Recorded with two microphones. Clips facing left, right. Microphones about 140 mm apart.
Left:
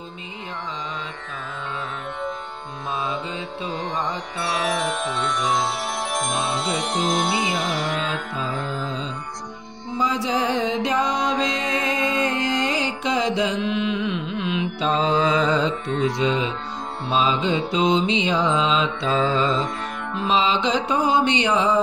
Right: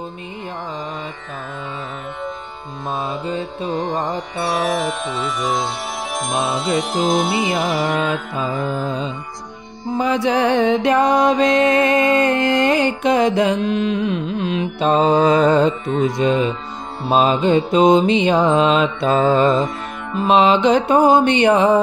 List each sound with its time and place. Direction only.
2.9 s music: centre (ahead or behind)
8.4 s music: 60° right (ahead or behind)
9.9 s mantra: 60° right (ahead or behind)
11.4 s music: 60° right (ahead or behind)
13.6 s music: 40° right (ahead or behind)
17.1 s mantra: 50° right (ahead or behind)
20.2 s music: 60° right (ahead or behind)